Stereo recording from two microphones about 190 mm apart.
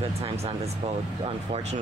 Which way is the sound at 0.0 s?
30° right (ahead or behind).